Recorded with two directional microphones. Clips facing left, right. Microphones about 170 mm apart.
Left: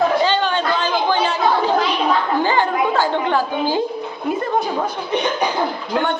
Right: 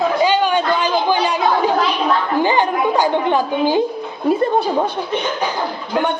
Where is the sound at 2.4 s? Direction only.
15° right (ahead or behind).